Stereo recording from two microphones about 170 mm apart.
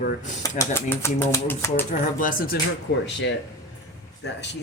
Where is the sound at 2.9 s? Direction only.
90° left.